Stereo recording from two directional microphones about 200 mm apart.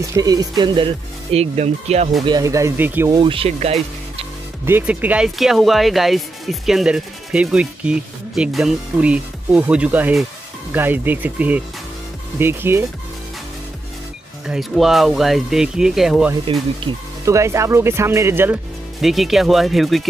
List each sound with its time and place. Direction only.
0.1 s speech: 20° right (ahead or behind)
2.2 s speech: 20° right (ahead or behind)
3.2 s speech: 25° right (ahead or behind)
4.6 s speech: 10° right (ahead or behind)
14.5 s speech: centre (ahead or behind)
16.8 s speech: 15° right (ahead or behind); by 20.1 s centre (ahead or behind)